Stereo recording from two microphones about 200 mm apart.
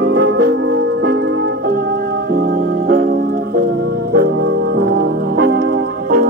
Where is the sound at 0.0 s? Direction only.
60° right (ahead or behind).